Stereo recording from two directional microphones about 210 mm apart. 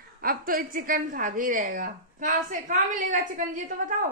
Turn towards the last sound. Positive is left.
turn(degrees=-40)  # may be behind; listen again after turning